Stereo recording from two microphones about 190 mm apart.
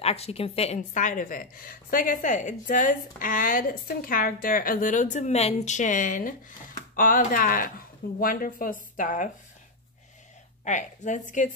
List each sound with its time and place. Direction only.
0.0 s a woman's voice: 30° left (ahead or behind)
10.6 s a woman's voice: 40° left (ahead or behind)